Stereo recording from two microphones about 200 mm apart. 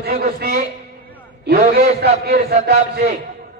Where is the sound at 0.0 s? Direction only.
50° right (ahead or behind).